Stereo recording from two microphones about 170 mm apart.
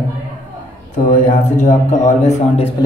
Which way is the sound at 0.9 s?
45° left (ahead or behind).